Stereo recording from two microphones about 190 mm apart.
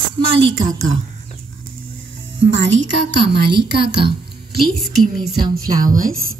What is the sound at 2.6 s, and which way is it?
A woman's voice, 70° right (ahead or behind).